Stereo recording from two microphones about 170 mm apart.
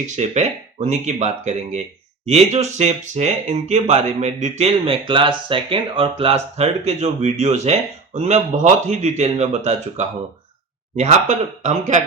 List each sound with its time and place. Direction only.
0.0 s speech: 45° right (ahead or behind)